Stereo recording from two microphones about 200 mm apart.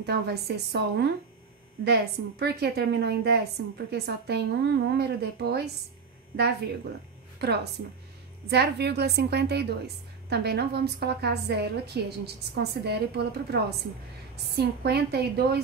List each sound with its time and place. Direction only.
0.0 s a woman's voice: 55° right (ahead or behind)
7.3 s a woman's voice: 55° right (ahead or behind)